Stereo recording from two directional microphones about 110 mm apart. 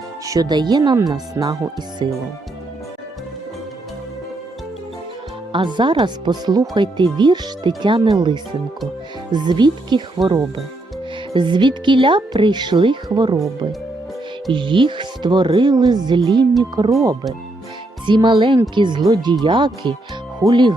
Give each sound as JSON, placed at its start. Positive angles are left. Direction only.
{"t": 0.3, "sound": "speech", "side_deg": -35}
{"t": 5.5, "sound": "speech", "side_deg": -45}
{"t": 11.3, "sound": "speech", "side_deg": -45}
{"t": 14.5, "sound": "speech", "side_deg": -50}
{"t": 18.0, "sound": "speech", "side_deg": -45}